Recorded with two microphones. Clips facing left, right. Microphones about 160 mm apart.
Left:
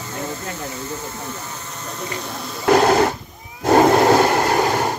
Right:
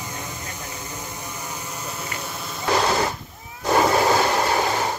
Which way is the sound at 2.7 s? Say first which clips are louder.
Left 7 dB; 55° left (ahead or behind).